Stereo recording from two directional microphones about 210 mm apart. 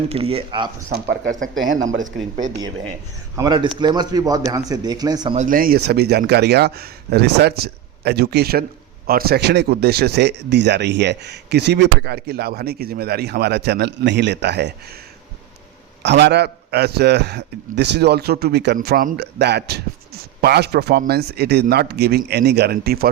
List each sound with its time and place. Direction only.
0.1 s speech: 25° right (ahead or behind)
0.9 s speech: 35° right (ahead or behind)
3.3 s speech: 20° right (ahead or behind)
5.4 s speech: 40° right (ahead or behind)
16.0 s speech: 55° right (ahead or behind)